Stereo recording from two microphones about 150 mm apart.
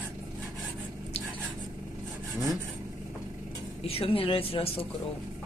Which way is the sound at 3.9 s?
40° left (ahead or behind).